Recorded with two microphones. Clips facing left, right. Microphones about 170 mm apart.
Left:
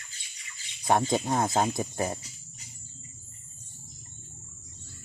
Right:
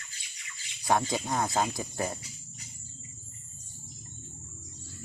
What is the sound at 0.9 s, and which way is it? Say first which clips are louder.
Speech: left 3 dB; 25° left (ahead or behind).